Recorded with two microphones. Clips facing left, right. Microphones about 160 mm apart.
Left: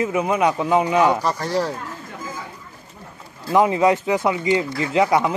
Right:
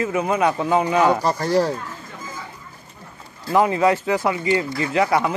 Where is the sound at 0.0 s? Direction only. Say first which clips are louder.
Left 1 dB; 15° left (ahead or behind).